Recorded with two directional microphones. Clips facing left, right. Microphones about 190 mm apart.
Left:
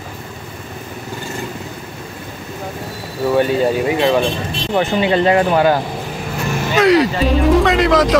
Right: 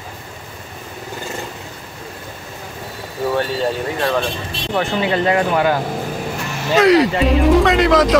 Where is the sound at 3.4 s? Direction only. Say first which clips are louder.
Left 7 dB; 10° left (ahead or behind).